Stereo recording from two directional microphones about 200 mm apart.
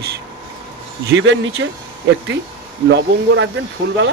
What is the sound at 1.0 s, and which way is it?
Speech, 65° right (ahead or behind).